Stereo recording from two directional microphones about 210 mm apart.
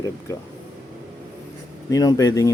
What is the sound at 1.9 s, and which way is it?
Speech, 15° left (ahead or behind).